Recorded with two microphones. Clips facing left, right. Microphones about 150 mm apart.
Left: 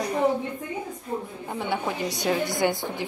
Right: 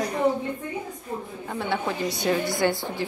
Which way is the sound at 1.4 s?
15° left (ahead or behind).